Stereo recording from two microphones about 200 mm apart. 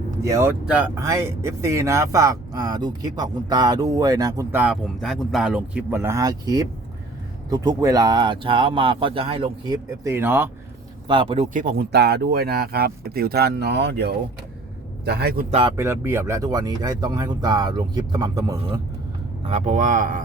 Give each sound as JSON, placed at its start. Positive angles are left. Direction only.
{"t": 0.2, "sound": "speech", "side_deg": -15}
{"t": 10.0, "sound": "speech", "side_deg": -15}
{"t": 11.1, "sound": "speech", "side_deg": -25}
{"t": 11.6, "sound": "speech", "side_deg": -55}
{"t": 15.4, "sound": "speech", "side_deg": -30}
{"t": 15.7, "sound": "speech", "side_deg": -15}
{"t": 19.5, "sound": "speech", "side_deg": -35}